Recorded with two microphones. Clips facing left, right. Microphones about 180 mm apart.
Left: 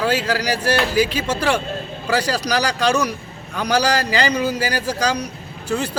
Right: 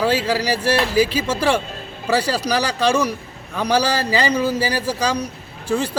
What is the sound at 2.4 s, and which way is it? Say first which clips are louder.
Speech: even; 5° right (ahead or behind).